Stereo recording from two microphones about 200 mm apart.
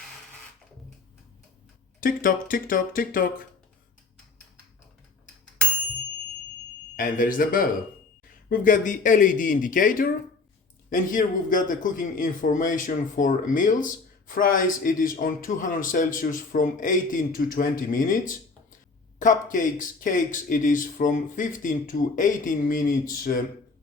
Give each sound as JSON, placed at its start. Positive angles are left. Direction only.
{"t": 2.0, "sound": "speech", "side_deg": 45}
{"t": 6.9, "sound": "a man's voice", "side_deg": 45}